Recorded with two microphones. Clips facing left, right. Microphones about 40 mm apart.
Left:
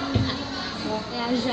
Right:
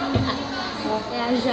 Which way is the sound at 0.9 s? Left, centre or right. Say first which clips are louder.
Right 3 dB; centre.